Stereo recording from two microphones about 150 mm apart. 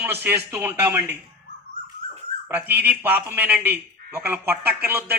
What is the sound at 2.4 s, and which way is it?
Speech, 10° right (ahead or behind).